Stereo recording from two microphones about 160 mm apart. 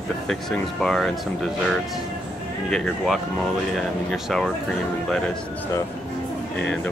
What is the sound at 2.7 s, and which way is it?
Speech, centre (ahead or behind).